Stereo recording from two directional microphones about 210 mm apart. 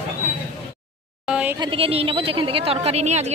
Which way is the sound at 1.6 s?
25° right (ahead or behind).